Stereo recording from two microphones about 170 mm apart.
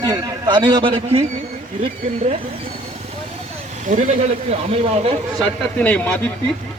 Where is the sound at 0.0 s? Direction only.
25° right (ahead or behind).